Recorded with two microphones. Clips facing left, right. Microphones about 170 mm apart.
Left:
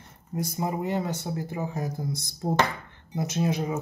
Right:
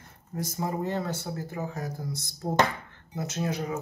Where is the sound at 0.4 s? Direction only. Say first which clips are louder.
Left 2 dB; 15° left (ahead or behind).